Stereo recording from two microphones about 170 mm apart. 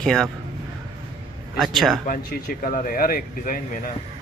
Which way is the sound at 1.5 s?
Centre (ahead or behind).